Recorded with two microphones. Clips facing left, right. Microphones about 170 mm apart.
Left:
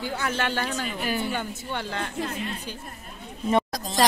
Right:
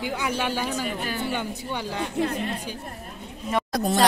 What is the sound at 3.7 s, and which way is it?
Speech, 60° right (ahead or behind).